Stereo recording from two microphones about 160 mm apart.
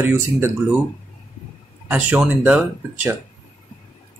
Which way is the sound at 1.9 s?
10° right (ahead or behind).